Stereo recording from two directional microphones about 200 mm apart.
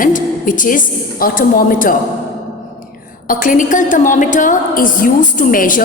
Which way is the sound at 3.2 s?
40° left (ahead or behind).